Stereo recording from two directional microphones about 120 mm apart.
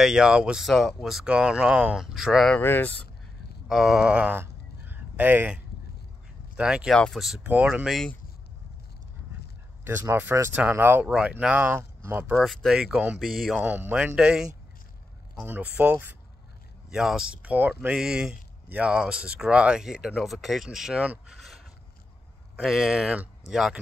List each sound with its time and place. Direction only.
0.0 s speech: 5° right (ahead or behind)
2.5 s speech: 15° left (ahead or behind)
3.6 s speech: centre (ahead or behind)
9.8 s speech: 15° right (ahead or behind)
12.4 s speech: centre (ahead or behind)
13.2 s speech: centre (ahead or behind)
13.6 s speech: 15° right (ahead or behind)
21.4 s a sound: centre (ahead or behind)
22.6 s speech: centre (ahead or behind)